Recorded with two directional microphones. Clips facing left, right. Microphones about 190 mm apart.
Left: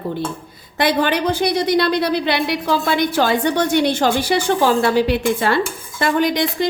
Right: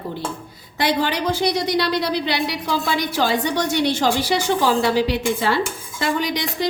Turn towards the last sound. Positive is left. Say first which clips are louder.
# left 5 dB
turn(degrees=50)  # may be behind; listen again after turning